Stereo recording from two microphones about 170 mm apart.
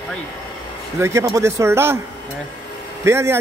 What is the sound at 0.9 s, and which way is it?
A man's voice, 15° right (ahead or behind).